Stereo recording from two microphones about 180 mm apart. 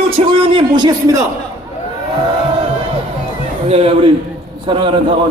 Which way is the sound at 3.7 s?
35° right (ahead or behind).